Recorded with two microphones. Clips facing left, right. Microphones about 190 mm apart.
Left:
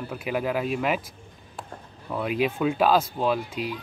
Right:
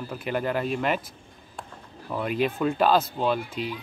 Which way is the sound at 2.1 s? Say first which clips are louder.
Left 1 dB; 5° left (ahead or behind).